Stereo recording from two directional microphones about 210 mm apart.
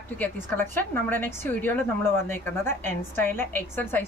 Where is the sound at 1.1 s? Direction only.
10° left (ahead or behind).